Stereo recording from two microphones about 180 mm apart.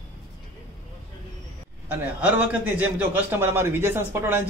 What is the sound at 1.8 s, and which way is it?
A man's voice, 10° right (ahead or behind).